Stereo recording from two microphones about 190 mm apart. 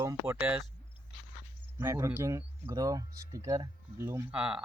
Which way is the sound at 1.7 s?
15° right (ahead or behind).